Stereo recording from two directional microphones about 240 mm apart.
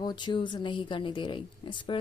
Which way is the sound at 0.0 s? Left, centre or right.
Centre.